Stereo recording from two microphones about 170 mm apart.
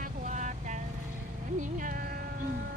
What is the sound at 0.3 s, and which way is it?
Vehicle, 45° right (ahead or behind).